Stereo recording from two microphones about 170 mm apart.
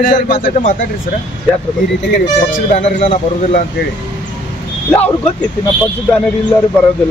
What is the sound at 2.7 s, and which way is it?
Speech, 40° left (ahead or behind).